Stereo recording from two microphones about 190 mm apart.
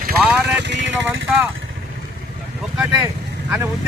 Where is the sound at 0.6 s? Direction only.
70° right (ahead or behind).